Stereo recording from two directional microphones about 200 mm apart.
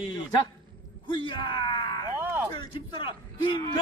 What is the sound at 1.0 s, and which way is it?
Speech, 25° left (ahead or behind).